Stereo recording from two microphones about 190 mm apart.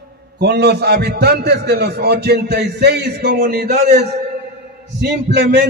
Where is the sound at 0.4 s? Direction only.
60° right (ahead or behind).